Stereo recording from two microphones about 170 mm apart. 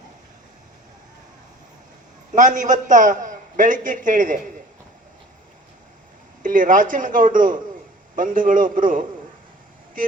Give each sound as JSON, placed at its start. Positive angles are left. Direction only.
{"t": 2.3, "sound": "a man's voice", "side_deg": -50}
{"t": 6.4, "sound": "a man's voice", "side_deg": -50}